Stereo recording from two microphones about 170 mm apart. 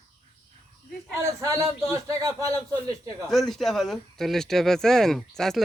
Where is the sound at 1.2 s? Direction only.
20° right (ahead or behind).